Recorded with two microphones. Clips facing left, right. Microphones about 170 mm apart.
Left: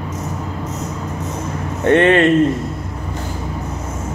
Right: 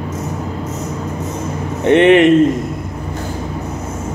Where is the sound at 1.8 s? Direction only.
20° right (ahead or behind).